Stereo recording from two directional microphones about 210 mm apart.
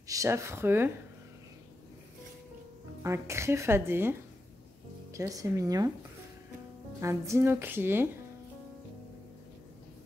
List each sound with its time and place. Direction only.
0.1 s speech: 15° right (ahead or behind)
3.0 s speech: 15° right (ahead or behind)
7.0 s speech: 15° right (ahead or behind)